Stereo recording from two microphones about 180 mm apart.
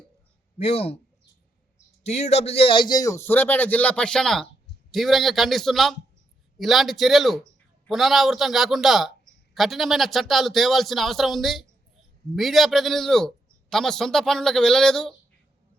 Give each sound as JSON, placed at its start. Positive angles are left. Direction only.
{"t": 0.6, "sound": "speech", "side_deg": 35}
{"t": 2.0, "sound": "a man's voice", "side_deg": 35}